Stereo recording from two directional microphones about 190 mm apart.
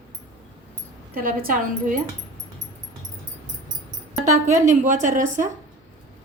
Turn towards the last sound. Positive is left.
turn(degrees=-45)  # may be behind; listen again after turning